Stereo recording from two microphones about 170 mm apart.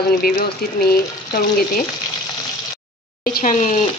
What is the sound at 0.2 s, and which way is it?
A woman's voice, 60° left (ahead or behind).